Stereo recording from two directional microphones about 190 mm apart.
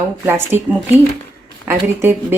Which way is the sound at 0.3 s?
10° right (ahead or behind).